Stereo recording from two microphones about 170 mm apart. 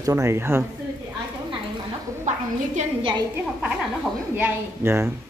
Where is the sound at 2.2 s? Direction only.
45° right (ahead or behind).